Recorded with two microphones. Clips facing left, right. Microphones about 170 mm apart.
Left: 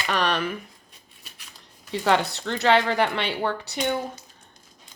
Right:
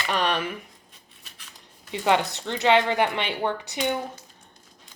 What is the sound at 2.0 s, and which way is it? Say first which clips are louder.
A woman's voice: even; 15° right (ahead or behind).